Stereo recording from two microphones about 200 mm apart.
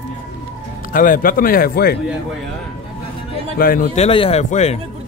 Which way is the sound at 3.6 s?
45° left (ahead or behind).